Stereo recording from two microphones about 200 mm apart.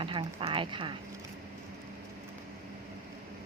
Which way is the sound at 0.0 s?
25° right (ahead or behind).